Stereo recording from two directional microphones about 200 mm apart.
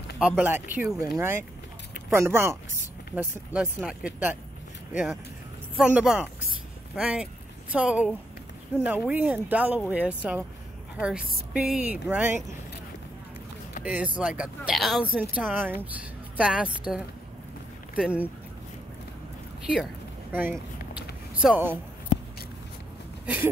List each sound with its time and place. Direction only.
0.4 s speech: 10° right (ahead or behind)
13.8 s a woman's voice: 5° right (ahead or behind)
19.6 s speech: 5° right (ahead or behind)
20.5 s a sound: 5° right (ahead or behind)
23.3 s speech: 5° right (ahead or behind)